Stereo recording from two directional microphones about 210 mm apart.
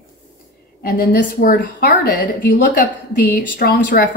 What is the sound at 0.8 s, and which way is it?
A woman's voice, 45° left (ahead or behind).